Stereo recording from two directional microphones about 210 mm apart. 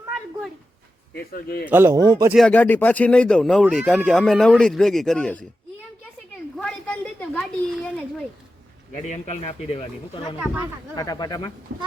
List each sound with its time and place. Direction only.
1.1 s speech: 45° left (ahead or behind)
1.7 s speech: 15° right (ahead or behind)
2.3 s speech: 5° left (ahead or behind)
6.6 s a sound: 5° left (ahead or behind)
9.0 s speech: 35° left (ahead or behind)
10.4 s speech: 10° right (ahead or behind)
10.9 s speech: 20° left (ahead or behind)